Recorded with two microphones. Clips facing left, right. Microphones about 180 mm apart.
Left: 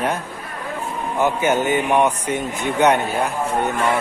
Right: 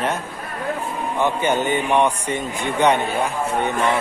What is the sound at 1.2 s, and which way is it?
Speech, 5° left (ahead or behind).